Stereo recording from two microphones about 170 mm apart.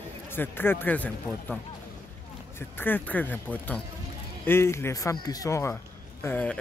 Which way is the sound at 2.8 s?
10° left (ahead or behind).